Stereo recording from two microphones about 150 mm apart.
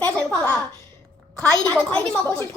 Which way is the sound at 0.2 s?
10° left (ahead or behind).